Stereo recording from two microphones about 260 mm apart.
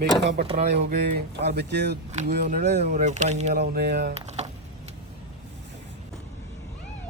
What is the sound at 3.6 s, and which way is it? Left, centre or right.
Speech, right.